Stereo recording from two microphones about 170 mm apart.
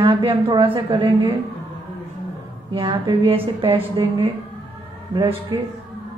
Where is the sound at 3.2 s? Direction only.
35° right (ahead or behind).